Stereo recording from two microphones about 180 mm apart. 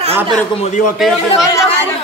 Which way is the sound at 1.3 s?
15° left (ahead or behind).